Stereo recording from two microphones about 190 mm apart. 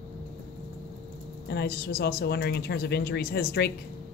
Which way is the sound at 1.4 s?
60° left (ahead or behind).